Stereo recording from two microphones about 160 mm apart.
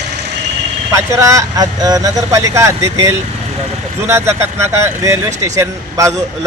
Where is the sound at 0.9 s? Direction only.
20° right (ahead or behind).